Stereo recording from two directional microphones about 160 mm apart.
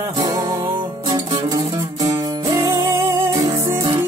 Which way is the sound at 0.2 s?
25° right (ahead or behind).